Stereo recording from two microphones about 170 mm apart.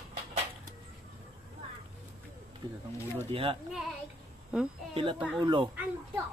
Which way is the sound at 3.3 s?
35° right (ahead or behind).